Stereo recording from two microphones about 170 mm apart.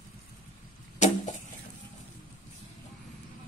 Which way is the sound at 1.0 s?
45° left (ahead or behind).